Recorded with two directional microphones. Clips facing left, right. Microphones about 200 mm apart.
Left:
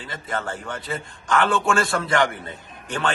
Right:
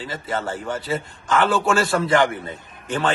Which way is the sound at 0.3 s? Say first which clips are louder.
Right 3 dB; 35° right (ahead or behind).